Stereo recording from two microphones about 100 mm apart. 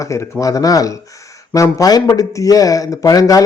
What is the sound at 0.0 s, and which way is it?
Speech, 30° left (ahead or behind).